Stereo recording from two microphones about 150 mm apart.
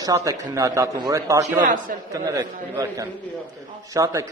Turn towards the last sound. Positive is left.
turn(degrees=-20)  # may be behind; listen again after turning